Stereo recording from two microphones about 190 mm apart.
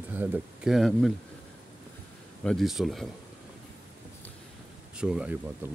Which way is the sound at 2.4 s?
Centre (ahead or behind).